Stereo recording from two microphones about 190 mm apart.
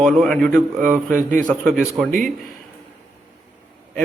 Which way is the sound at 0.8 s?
45° right (ahead or behind).